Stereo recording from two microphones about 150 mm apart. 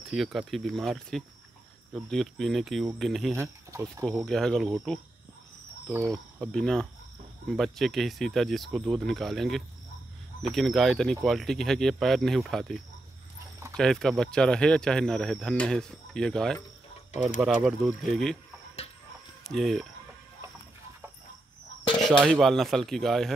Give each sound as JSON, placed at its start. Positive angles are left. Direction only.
{"t": 0.1, "sound": "speech", "side_deg": 0}
{"t": 3.3, "sound": "speech", "side_deg": -20}
{"t": 4.0, "sound": "speech", "side_deg": 0}
{"t": 6.0, "sound": "speech", "side_deg": 5}
{"t": 19.4, "sound": "speech", "side_deg": 0}
{"t": 22.3, "sound": "speech", "side_deg": 0}